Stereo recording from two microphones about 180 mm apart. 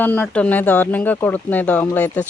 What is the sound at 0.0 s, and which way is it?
Speech, 10° left (ahead or behind).